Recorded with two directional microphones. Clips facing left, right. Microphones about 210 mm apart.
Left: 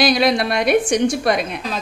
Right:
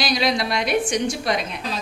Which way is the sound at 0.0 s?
55° left (ahead or behind).